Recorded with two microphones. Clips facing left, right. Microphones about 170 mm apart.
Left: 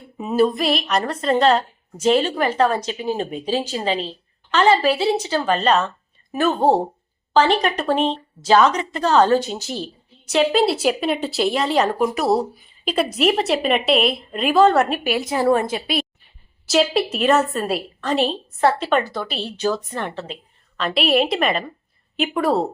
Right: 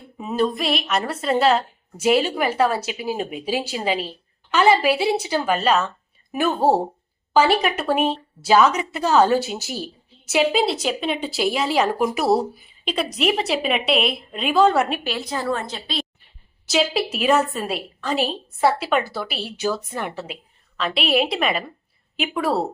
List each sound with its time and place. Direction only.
0.2 s a woman's voice: 5° left (ahead or behind)
15.3 s a woman's voice: 20° left (ahead or behind)
16.6 s a woman's voice: centre (ahead or behind)